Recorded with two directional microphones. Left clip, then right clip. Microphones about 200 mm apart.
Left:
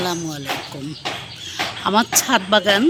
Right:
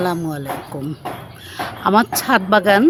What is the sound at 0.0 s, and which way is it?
A woman's voice, 40° right (ahead or behind).